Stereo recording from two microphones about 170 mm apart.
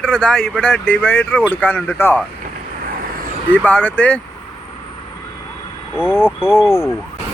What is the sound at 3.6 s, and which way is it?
Speech, 10° left (ahead or behind).